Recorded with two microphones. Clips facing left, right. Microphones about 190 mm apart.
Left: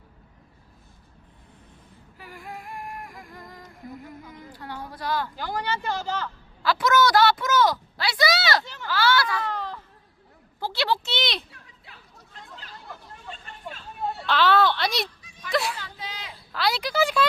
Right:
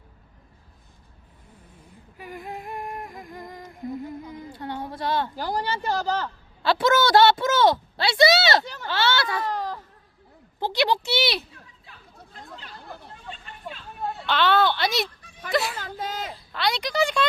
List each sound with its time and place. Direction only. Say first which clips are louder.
2.1 s humming: right 4 dB; 20° right (ahead or behind)
8.6 s speech: right 3 dB; 40° right (ahead or behind)
8.9 s speech: left 1 dB; 25° right (ahead or behind)
9.4 s a sound: right 3 dB; 40° right (ahead or behind)
10.6 s speech: right 3 dB; 15° right (ahead or behind)
14.3 s a child's voice: even; centre (ahead or behind)
15.2 s a sound: right 1 dB; 55° right (ahead or behind)
16.5 s a child's voice: left 1 dB; centre (ahead or behind)